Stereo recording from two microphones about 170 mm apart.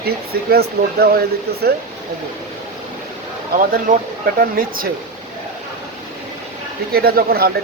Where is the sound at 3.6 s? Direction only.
50° right (ahead or behind).